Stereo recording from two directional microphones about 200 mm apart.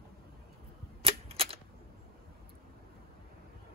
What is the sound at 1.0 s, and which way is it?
Cap gun, 30° right (ahead or behind).